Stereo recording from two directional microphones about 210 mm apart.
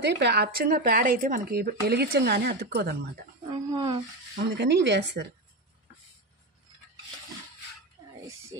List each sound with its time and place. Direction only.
0.0 s speech: 55° right (ahead or behind)
3.4 s a sound: 20° right (ahead or behind)
4.4 s speech: 55° right (ahead or behind)